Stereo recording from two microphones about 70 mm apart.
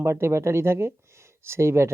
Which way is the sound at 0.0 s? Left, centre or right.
Right.